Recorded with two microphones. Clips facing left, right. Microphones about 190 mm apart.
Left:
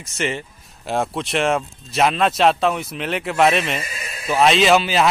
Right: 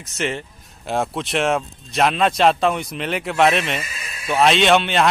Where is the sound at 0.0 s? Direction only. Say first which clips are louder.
Even; centre (ahead or behind).